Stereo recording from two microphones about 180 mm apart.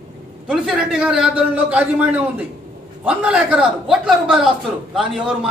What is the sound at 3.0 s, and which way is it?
A man's voice, 5° right (ahead or behind).